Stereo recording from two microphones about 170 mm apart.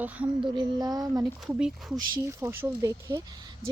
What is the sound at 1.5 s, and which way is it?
Speech, 5° right (ahead or behind).